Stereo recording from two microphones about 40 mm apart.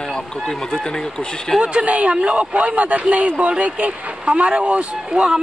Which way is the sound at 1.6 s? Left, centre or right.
Right.